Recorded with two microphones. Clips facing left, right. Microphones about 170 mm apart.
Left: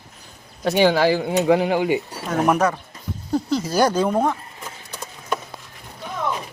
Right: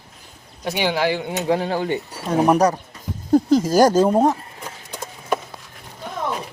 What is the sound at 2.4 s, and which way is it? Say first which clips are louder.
Speech: right 2 dB; 35° right (ahead or behind).